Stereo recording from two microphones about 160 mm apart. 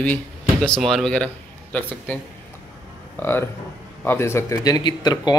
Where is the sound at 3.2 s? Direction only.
15° left (ahead or behind).